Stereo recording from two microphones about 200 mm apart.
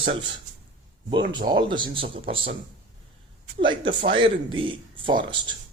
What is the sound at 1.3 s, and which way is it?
Speech, 20° right (ahead or behind).